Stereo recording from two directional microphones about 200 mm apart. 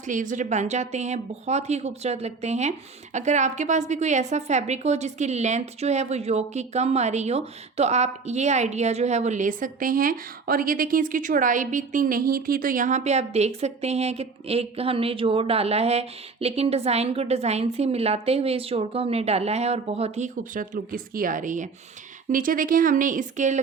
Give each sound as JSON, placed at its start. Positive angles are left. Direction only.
{"t": 0.0, "sound": "speech", "side_deg": -40}